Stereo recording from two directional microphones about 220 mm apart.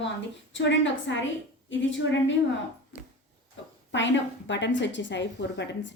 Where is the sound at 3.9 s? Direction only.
55° left (ahead or behind).